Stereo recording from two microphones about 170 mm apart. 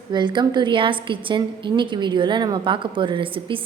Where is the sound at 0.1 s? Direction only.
25° right (ahead or behind).